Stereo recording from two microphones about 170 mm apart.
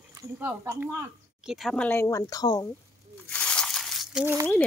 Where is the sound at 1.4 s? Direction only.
Centre (ahead or behind).